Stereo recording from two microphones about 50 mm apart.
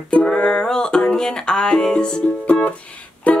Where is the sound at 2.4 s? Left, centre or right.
Left.